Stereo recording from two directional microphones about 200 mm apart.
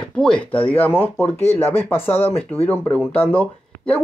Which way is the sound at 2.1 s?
30° left (ahead or behind).